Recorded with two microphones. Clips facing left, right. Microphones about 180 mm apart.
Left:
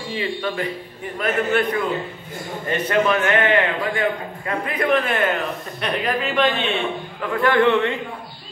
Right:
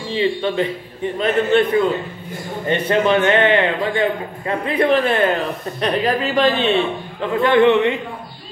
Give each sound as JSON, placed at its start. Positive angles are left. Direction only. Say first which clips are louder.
{"t": 0.1, "sound": "a man's voice", "louder": "right 7 dB", "side_deg": -25}
{"t": 2.9, "sound": "a man's voice", "louder": "right 3 dB", "side_deg": -30}
{"t": 7.2, "sound": "a man's voice", "louder": "right 4 dB", "side_deg": -25}